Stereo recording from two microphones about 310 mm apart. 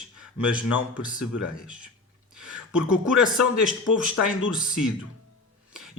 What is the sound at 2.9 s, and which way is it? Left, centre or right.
Speech, centre.